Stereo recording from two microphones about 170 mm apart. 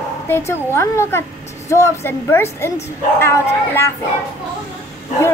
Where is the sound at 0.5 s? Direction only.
15° left (ahead or behind).